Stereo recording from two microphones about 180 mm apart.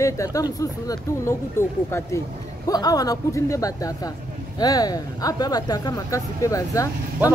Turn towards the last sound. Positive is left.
turn(degrees=20)  # may be behind; listen again after turning